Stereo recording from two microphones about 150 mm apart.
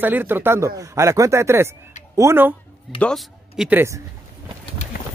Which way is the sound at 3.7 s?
15° right (ahead or behind).